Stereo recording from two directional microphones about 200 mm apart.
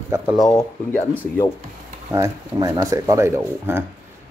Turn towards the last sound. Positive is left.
turn(degrees=-10)  # may be behind; listen again after turning